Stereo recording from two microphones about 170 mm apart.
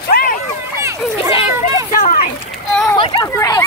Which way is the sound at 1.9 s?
50° left (ahead or behind).